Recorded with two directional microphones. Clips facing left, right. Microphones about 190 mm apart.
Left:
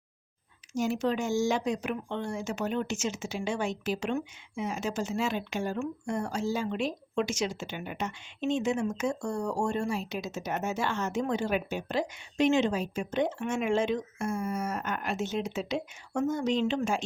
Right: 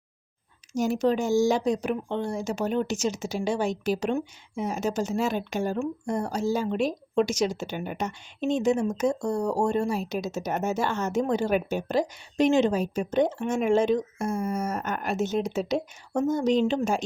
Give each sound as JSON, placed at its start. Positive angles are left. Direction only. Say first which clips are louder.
{"t": 0.7, "sound": "speech", "louder": "right 5 dB", "side_deg": -40}